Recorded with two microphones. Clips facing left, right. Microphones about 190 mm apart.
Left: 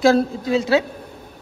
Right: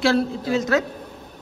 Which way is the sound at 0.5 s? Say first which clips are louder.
Left 3 dB; 30° left (ahead or behind).